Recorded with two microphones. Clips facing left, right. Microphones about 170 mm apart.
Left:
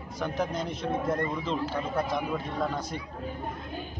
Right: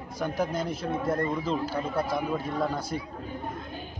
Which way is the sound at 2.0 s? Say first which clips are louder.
Right 1 dB; 5° right (ahead or behind).